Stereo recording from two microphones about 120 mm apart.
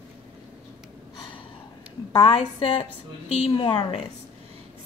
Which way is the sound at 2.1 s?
45° left (ahead or behind).